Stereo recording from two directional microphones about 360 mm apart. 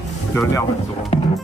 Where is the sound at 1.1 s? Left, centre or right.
Centre.